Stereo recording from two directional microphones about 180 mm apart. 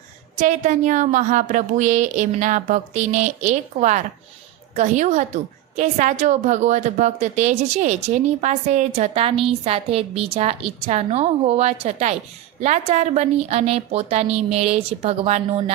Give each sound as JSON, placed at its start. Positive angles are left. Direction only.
{"t": 0.3, "sound": "a woman's voice", "side_deg": -40}